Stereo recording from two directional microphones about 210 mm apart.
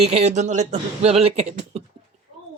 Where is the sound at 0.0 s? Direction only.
30° right (ahead or behind).